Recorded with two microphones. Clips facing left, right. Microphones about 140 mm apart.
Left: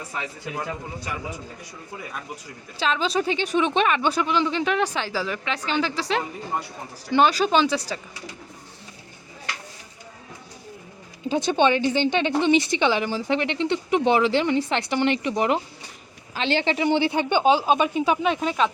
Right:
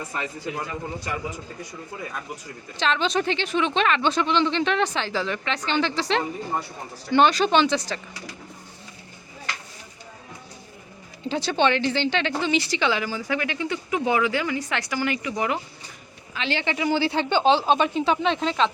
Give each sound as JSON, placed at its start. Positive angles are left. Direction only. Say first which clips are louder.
{"t": 0.1, "sound": "speech", "louder": "right 2 dB", "side_deg": 5}
{"t": 2.7, "sound": "speech", "louder": "even", "side_deg": 5}
{"t": 11.3, "sound": "speech", "louder": "left 2 dB", "side_deg": 15}